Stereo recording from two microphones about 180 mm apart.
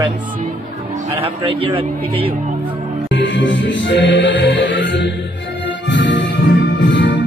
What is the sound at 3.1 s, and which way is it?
Music, 90° left.